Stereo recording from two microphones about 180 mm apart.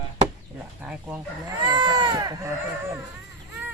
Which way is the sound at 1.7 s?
25° right (ahead or behind).